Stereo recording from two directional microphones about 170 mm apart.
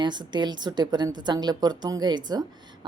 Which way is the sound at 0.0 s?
25° right (ahead or behind).